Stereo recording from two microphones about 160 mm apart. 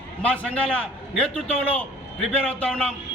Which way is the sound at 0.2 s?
5° left (ahead or behind).